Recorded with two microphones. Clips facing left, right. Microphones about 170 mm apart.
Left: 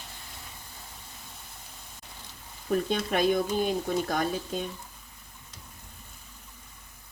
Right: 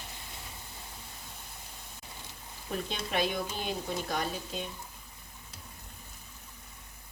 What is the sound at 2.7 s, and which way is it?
Speech, 45° left (ahead or behind).